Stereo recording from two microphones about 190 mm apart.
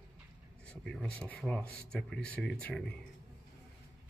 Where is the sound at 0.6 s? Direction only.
5° left (ahead or behind).